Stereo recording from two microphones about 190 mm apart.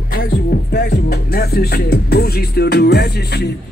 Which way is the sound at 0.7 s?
55° left (ahead or behind).